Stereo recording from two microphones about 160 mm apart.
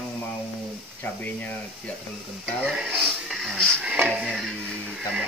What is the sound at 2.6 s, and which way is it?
Speech, 5° right (ahead or behind).